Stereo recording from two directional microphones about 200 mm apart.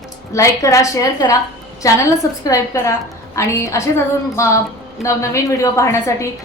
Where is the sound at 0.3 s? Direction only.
15° left (ahead or behind).